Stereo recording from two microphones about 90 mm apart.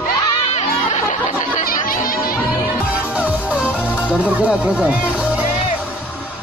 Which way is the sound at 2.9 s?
15° right (ahead or behind).